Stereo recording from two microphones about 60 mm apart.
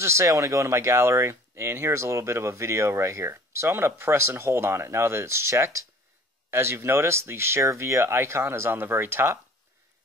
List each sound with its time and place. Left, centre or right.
0.0 s speech: right